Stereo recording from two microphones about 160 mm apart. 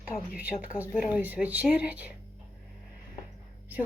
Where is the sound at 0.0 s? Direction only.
10° right (ahead or behind).